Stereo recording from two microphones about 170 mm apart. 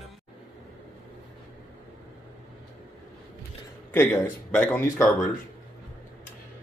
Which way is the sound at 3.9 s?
10° left (ahead or behind).